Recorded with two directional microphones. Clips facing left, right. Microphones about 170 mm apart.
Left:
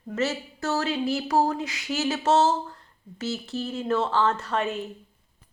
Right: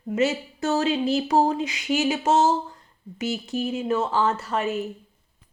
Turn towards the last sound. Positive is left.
turn(degrees=-5)  # may be behind; listen again after turning